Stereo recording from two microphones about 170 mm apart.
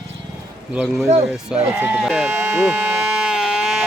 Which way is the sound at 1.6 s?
15° right (ahead or behind).